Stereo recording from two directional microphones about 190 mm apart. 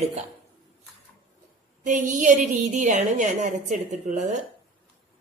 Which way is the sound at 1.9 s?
40° right (ahead or behind).